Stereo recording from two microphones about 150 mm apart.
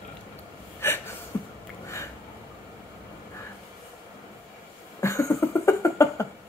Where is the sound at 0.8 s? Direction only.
15° left (ahead or behind).